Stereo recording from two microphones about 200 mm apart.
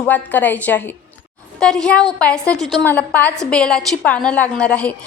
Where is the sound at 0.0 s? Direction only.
10° left (ahead or behind).